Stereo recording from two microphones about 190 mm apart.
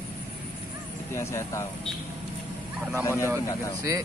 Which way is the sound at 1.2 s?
15° left (ahead or behind).